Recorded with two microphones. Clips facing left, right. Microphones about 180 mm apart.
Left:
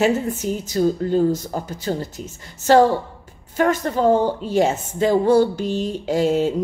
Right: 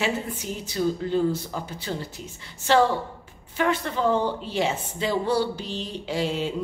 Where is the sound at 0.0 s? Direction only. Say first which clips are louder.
Left 9 dB; 45° left (ahead or behind).